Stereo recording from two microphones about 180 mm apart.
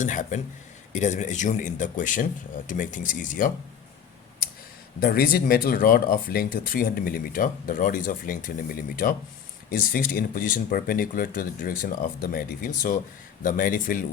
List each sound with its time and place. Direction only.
0.0 s speech: 45° left (ahead or behind)
4.9 s speech: 60° left (ahead or behind)